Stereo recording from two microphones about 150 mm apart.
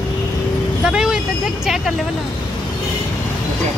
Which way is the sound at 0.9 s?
5° right (ahead or behind).